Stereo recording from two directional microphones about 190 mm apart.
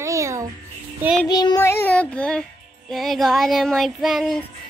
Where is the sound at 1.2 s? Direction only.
20° left (ahead or behind); by 4.4 s centre (ahead or behind).